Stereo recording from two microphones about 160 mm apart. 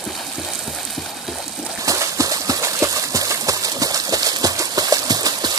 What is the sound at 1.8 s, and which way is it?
Horse, 20° right (ahead or behind).